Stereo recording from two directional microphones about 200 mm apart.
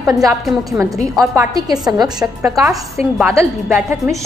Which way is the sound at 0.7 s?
15° right (ahead or behind).